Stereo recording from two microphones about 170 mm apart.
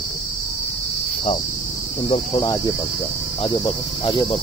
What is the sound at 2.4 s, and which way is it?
Cricket, 20° left (ahead or behind).